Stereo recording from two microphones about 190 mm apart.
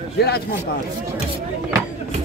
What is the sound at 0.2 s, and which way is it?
Speech, 55° left (ahead or behind).